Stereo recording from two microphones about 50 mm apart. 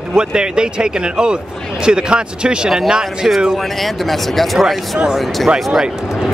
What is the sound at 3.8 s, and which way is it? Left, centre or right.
Speech, centre.